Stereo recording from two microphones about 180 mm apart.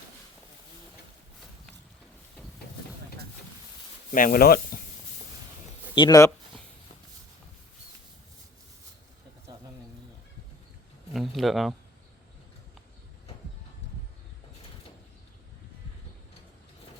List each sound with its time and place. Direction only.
4.1 s speech: 50° left (ahead or behind)
5.9 s speech: 25° left (ahead or behind)
11.1 s a sound: centre (ahead or behind)